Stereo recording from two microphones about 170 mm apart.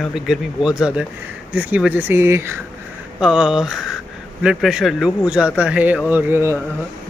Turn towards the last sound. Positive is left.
turn(degrees=-15)  # may be behind; listen again after turning